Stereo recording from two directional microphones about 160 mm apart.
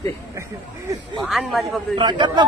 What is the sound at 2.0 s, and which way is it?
Speech, 30° right (ahead or behind).